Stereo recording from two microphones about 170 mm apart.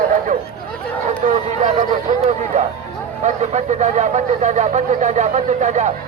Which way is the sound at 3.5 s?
45° right (ahead or behind).